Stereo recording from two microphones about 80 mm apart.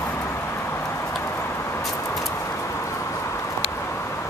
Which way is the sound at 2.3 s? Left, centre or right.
Left.